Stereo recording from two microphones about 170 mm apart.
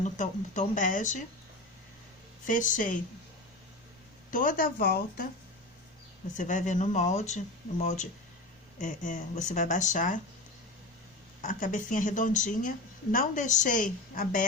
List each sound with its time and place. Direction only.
0.0 s speech: 45° left (ahead or behind)
2.5 s speech: 50° left (ahead or behind)
4.3 s speech: 50° left (ahead or behind)
6.3 s speech: 45° left (ahead or behind)
11.4 s speech: 50° left (ahead or behind)